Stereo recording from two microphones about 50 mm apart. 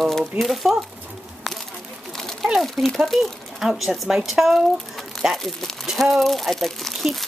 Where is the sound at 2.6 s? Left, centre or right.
Centre.